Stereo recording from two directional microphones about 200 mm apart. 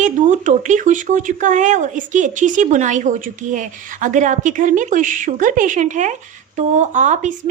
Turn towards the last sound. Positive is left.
turn(degrees=-40)  # may be behind; listen again after turning